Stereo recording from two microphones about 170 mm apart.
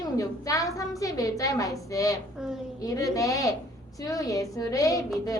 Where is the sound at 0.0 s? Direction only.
20° left (ahead or behind).